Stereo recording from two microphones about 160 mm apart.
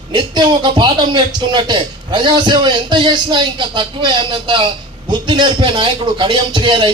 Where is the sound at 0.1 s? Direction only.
30° right (ahead or behind).